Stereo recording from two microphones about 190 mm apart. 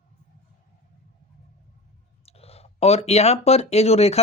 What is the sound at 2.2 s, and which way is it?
Speech, 30° left (ahead or behind).